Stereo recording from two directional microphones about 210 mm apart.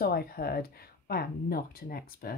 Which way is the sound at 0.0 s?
45° left (ahead or behind).